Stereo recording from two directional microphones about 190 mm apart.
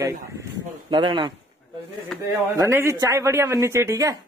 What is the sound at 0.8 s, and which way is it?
Speech, 25° right (ahead or behind).